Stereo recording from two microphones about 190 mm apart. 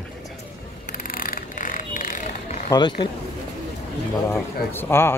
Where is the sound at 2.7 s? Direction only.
25° left (ahead or behind).